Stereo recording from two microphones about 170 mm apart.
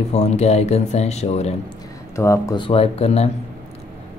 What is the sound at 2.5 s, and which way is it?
Speech, 35° left (ahead or behind).